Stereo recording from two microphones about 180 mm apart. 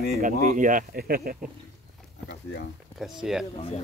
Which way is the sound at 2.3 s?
60° left (ahead or behind).